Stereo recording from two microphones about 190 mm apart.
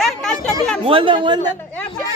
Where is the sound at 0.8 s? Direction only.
25° right (ahead or behind).